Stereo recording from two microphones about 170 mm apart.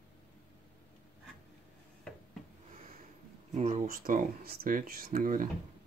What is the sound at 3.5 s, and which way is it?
Speech, 40° right (ahead or behind).